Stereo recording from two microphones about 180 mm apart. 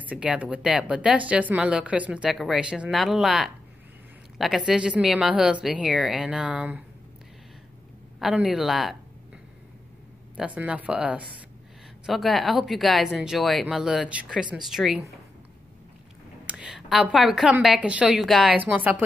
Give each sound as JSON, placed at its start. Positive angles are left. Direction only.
{"t": 0.0, "sound": "a woman's voice", "side_deg": -5}
{"t": 8.2, "sound": "a woman's voice", "side_deg": -5}
{"t": 10.3, "sound": "a woman's voice", "side_deg": -5}
{"t": 16.4, "sound": "a woman's voice", "side_deg": -5}